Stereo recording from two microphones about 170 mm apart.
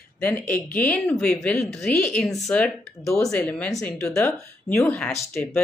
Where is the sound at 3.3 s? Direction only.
5° left (ahead or behind).